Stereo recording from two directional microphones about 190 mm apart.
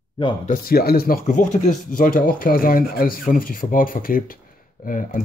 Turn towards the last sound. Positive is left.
turn(degrees=45)  # may be behind; listen again after turning